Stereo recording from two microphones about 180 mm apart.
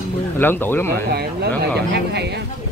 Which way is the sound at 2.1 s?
70° right (ahead or behind).